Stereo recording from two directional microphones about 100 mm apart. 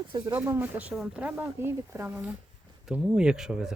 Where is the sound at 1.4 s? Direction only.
25° right (ahead or behind).